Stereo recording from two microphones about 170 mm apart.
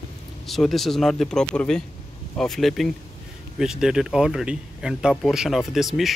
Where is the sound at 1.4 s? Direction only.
15° left (ahead or behind).